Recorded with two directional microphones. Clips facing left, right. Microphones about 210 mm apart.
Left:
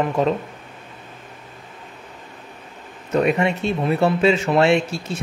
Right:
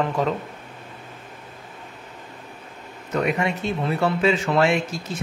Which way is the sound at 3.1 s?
25° left (ahead or behind).